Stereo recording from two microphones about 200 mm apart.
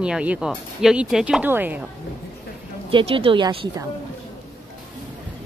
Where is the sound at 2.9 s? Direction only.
25° right (ahead or behind).